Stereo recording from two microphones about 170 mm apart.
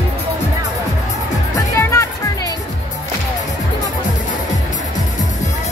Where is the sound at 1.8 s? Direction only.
15° left (ahead or behind).